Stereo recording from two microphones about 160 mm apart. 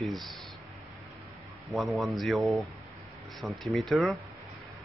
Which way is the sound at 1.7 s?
Centre (ahead or behind).